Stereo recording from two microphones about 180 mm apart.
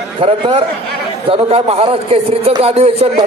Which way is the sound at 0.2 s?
30° right (ahead or behind).